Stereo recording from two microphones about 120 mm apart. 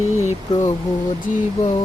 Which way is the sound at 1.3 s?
90° left.